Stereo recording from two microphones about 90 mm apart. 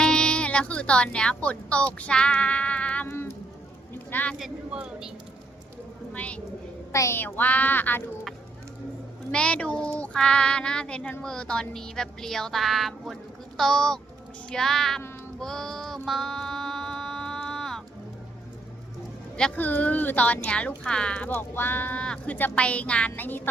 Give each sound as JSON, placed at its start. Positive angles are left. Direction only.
{"t": 0.0, "sound": "speech", "side_deg": 10}
{"t": 3.1, "sound": "a sound", "side_deg": 25}
{"t": 4.1, "sound": "speech", "side_deg": 20}
{"t": 4.4, "sound": "speech", "side_deg": -5}
{"t": 6.1, "sound": "speech", "side_deg": 15}
{"t": 6.9, "sound": "a child's voice", "side_deg": 35}
{"t": 7.2, "sound": "speech", "side_deg": 20}
{"t": 9.3, "sound": "speech", "side_deg": 10}
{"t": 15.4, "sound": "music", "side_deg": 5}
{"t": 19.5, "sound": "speech", "side_deg": 20}
{"t": 21.3, "sound": "speech", "side_deg": 25}